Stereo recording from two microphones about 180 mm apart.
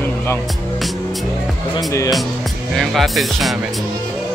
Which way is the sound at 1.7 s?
20° left (ahead or behind).